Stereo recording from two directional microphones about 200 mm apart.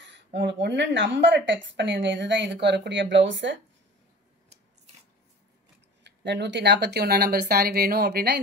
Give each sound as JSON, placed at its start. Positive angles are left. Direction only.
{"t": 0.3, "sound": "speech", "side_deg": -60}
{"t": 6.0, "sound": "speech", "side_deg": -60}